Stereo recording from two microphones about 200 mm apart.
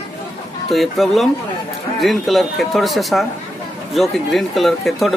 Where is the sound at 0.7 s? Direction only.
Centre (ahead or behind).